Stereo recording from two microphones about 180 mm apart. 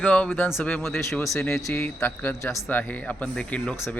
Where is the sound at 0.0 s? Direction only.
10° left (ahead or behind).